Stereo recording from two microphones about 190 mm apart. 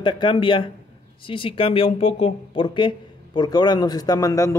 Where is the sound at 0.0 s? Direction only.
25° left (ahead or behind).